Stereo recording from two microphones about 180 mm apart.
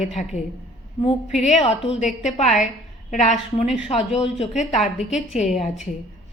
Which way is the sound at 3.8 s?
40° left (ahead or behind).